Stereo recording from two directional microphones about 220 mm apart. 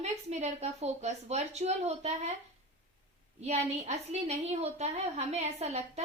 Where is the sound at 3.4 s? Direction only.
30° right (ahead or behind).